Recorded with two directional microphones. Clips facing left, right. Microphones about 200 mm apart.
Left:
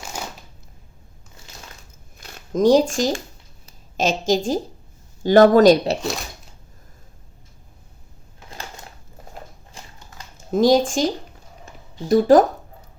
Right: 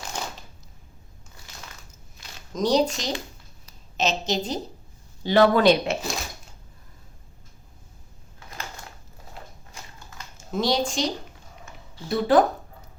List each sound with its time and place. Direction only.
0.2 s shuffling cards: 10° left (ahead or behind)
2.5 s speech: 50° left (ahead or behind)
4.3 s speech: 45° left (ahead or behind)
6.0 s speech: centre (ahead or behind)
10.5 s speech: 50° left (ahead or behind)